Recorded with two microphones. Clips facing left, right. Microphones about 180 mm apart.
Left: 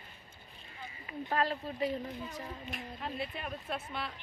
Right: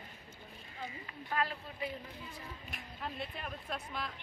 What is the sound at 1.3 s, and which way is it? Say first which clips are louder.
A woman's voice: left 4 dB; 40° left (ahead or behind).